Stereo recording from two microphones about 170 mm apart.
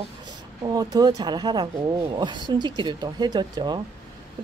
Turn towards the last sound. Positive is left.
turn(degrees=-25)  # may be behind; listen again after turning